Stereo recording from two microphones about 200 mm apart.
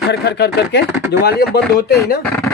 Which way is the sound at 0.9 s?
10° right (ahead or behind).